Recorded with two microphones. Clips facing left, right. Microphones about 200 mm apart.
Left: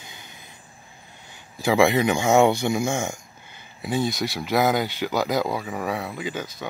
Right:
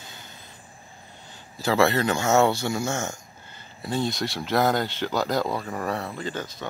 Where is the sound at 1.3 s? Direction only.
15° left (ahead or behind).